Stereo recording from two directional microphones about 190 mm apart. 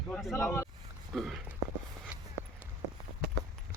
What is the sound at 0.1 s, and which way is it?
Speech, centre (ahead or behind).